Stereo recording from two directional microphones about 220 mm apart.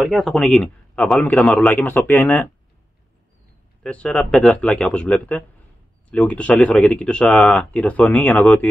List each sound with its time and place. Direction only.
0.0 s speech: centre (ahead or behind)
3.8 s speech: 5° left (ahead or behind)